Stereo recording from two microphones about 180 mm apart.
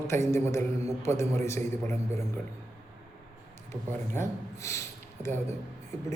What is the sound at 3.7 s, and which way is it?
A man's voice, 15° left (ahead or behind).